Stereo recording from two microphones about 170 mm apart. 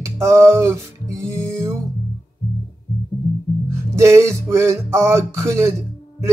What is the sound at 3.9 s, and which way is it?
Speech, 15° right (ahead or behind).